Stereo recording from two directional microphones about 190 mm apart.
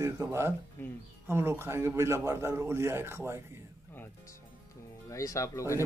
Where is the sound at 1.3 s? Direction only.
10° right (ahead or behind).